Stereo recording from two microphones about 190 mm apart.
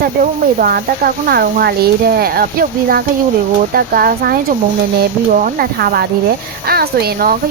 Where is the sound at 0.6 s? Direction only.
50° right (ahead or behind).